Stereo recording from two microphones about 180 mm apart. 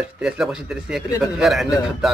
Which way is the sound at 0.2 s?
5° right (ahead or behind).